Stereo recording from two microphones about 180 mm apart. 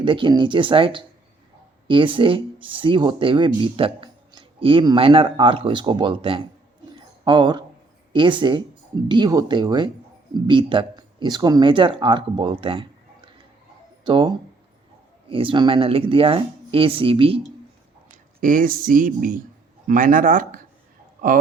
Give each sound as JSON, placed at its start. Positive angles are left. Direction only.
{"t": 0.0, "sound": "speech", "side_deg": -25}
{"t": 18.3, "sound": "speech", "side_deg": -50}
{"t": 21.2, "sound": "a sound", "side_deg": -50}